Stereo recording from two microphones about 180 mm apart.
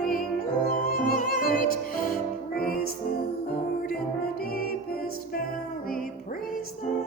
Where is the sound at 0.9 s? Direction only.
55° left (ahead or behind).